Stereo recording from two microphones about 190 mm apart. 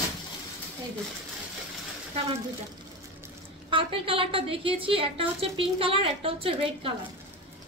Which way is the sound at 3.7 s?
30° right (ahead or behind).